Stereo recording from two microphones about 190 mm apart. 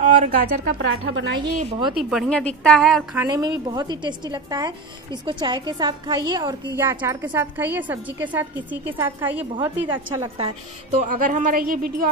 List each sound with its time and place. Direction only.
0.0 s a woman's voice: 40° right (ahead or behind)
1.0 s a woman's voice: 70° right (ahead or behind)
1.6 s a woman's voice: 30° right (ahead or behind)
2.0 s a woman's voice: centre (ahead or behind)
3.2 s a woman's voice: 20° right (ahead or behind)
11.0 s a woman's voice: 45° right (ahead or behind)